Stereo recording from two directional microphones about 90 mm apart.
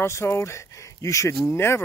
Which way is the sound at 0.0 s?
30° left (ahead or behind).